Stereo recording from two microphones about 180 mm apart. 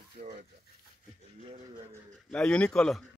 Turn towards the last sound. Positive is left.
turn(degrees=0)  # may be behind; listen again after turning